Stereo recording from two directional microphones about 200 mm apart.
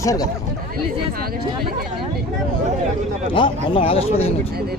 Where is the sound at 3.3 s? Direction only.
25° left (ahead or behind).